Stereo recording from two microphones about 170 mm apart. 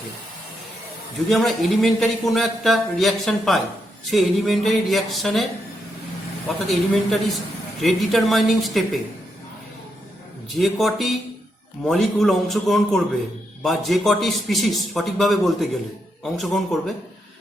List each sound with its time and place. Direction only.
1.3 s a man's voice: centre (ahead or behind)
6.7 s a man's voice: centre (ahead or behind)
10.5 s a man's voice: centre (ahead or behind)